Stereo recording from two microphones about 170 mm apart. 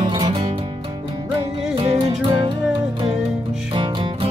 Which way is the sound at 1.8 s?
35° right (ahead or behind).